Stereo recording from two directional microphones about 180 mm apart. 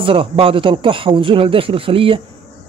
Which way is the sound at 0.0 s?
30° right (ahead or behind).